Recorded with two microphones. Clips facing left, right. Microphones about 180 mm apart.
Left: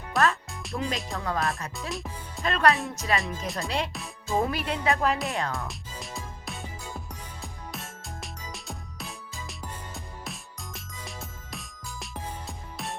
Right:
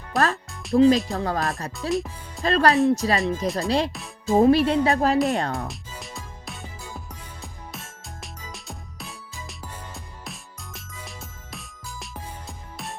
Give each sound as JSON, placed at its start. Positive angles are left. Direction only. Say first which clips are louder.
{"t": 0.1, "sound": "music", "louder": "right 2 dB", "side_deg": 0}
{"t": 0.8, "sound": "speech", "louder": "right 15 dB", "side_deg": -35}
{"t": 1.9, "sound": "speech", "louder": "right 9 dB", "side_deg": 0}
{"t": 2.4, "sound": "speech", "louder": "right 6 dB", "side_deg": -35}
{"t": 3.4, "sound": "speech", "louder": "right 7 dB", "side_deg": 0}
{"t": 3.7, "sound": "speech", "louder": "right 8 dB", "side_deg": -35}
{"t": 3.9, "sound": "music", "louder": "right 7 dB", "side_deg": 0}
{"t": 4.4, "sound": "speech", "louder": "right 11 dB", "side_deg": -30}
{"t": 5.6, "sound": "music", "louder": "right 2 dB", "side_deg": 0}